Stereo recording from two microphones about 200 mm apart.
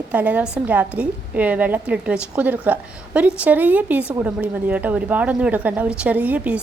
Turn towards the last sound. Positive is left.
turn(degrees=-5)  # may be behind; listen again after turning